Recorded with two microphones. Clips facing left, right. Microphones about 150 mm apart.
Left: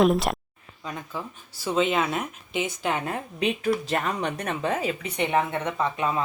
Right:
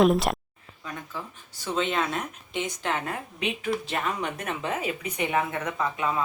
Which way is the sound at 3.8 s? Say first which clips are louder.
Left 3 dB; 40° left (ahead or behind).